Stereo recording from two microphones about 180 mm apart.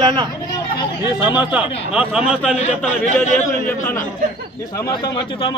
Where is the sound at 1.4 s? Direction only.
5° right (ahead or behind).